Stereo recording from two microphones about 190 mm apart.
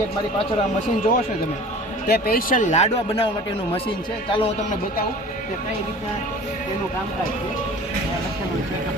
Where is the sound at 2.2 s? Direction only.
45° left (ahead or behind).